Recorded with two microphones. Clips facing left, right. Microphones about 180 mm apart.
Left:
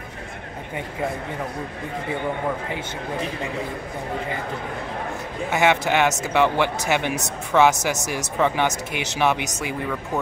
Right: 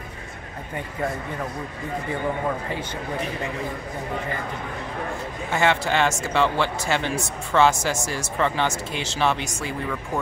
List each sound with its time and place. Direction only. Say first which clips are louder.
5.5 s speech: left 2 dB; 15° left (ahead or behind)